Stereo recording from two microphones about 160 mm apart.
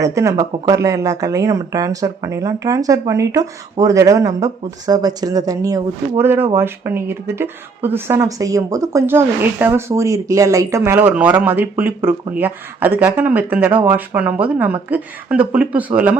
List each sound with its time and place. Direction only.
0.0 s speech: 20° right (ahead or behind)